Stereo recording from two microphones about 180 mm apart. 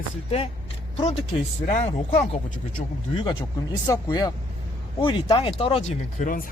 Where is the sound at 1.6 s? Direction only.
40° left (ahead or behind).